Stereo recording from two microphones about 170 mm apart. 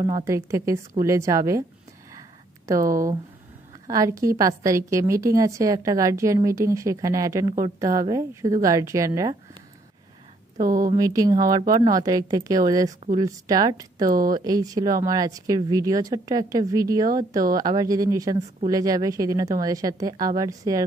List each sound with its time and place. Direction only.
0.1 s a woman's voice: 15° right (ahead or behind)
2.7 s a woman's voice: 20° right (ahead or behind)
10.6 s speech: 55° right (ahead or behind)
11.0 s a woman's voice: 20° right (ahead or behind)